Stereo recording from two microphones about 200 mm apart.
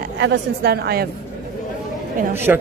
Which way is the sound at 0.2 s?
55° right (ahead or behind).